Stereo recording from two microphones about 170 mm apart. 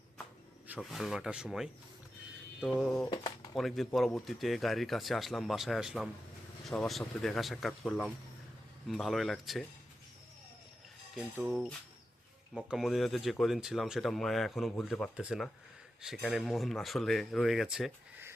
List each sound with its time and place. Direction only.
0.8 s speech: centre (ahead or behind)
3.1 s speech: 25° left (ahead or behind)
3.5 s speech: centre (ahead or behind)
11.3 s speech: 5° right (ahead or behind)